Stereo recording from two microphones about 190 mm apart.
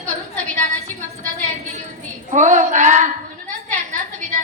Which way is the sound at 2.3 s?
40° right (ahead or behind).